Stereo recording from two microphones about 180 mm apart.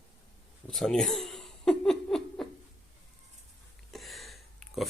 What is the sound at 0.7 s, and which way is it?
Laughter, 5° left (ahead or behind).